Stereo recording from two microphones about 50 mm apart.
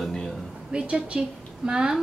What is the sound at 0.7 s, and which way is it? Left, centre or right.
Speech, right.